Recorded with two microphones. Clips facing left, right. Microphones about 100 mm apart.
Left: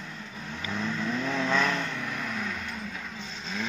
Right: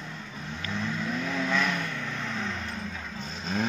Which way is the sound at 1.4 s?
15° left (ahead or behind).